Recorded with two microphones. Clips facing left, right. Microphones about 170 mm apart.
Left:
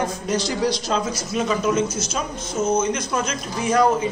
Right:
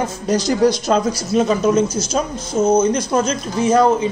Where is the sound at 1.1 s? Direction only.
35° right (ahead or behind).